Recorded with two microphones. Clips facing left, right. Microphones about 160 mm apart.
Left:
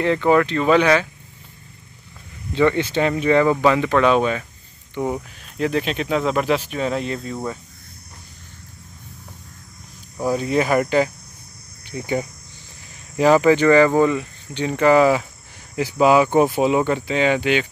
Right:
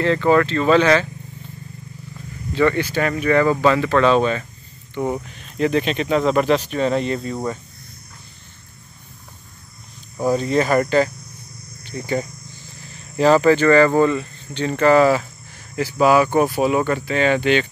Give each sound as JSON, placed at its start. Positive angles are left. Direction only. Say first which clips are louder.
{"t": 0.0, "sound": "speech", "louder": "right 1 dB", "side_deg": 15}
{"t": 2.5, "sound": "speech", "louder": "even", "side_deg": 20}
{"t": 10.1, "sound": "speech", "louder": "right 2 dB", "side_deg": 5}